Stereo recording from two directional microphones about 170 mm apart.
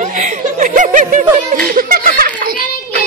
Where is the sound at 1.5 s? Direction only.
55° right (ahead or behind).